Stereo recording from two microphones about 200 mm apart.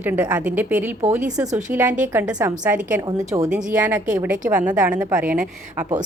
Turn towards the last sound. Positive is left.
turn(degrees=-5)  # may be behind; listen again after turning